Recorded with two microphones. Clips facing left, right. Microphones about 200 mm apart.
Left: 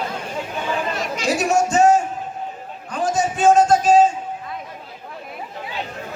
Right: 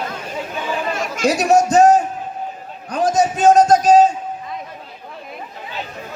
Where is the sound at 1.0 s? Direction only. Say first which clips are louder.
Right 3 dB; 50° right (ahead or behind).